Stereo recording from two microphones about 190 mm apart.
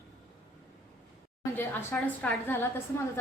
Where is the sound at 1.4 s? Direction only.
10° left (ahead or behind).